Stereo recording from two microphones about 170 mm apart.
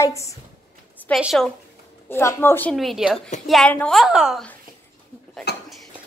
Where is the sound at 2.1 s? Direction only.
15° left (ahead or behind).